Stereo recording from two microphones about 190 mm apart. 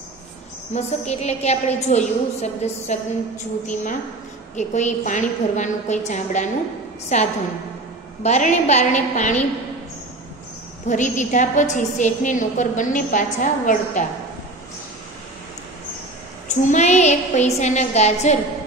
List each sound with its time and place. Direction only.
0.7 s a woman's voice: 35° left (ahead or behind)
4.6 s a woman's voice: 40° left (ahead or behind)
10.9 s a woman's voice: 40° left (ahead or behind)
16.4 s a woman's voice: 40° left (ahead or behind)